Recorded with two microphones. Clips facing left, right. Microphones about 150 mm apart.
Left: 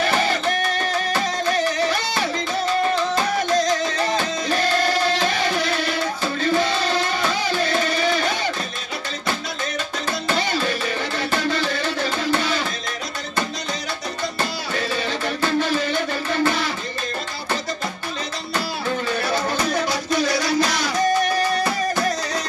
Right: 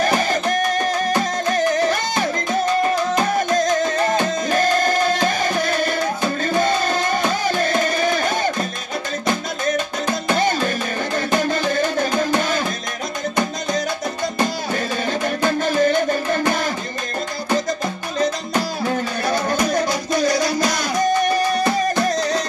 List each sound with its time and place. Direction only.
0.2 s music: 45° right (ahead or behind)
3.5 s music: 50° right (ahead or behind)
10.3 s music: 45° right (ahead or behind)
15.6 s music: 45° right (ahead or behind)
20.2 s music: 45° right (ahead or behind)